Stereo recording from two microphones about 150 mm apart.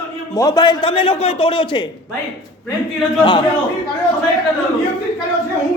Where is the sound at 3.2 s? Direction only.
35° left (ahead or behind).